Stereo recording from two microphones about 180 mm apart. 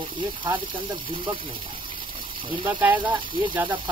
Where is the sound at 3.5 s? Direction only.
10° right (ahead or behind).